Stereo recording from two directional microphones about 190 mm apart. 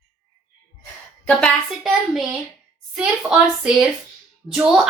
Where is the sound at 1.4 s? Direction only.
Centre (ahead or behind).